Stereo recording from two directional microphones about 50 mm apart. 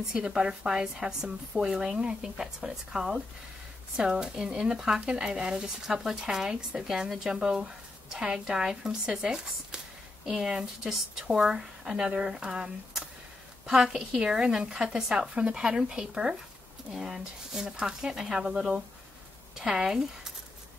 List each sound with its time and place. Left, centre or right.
0.0 s a woman's voice: centre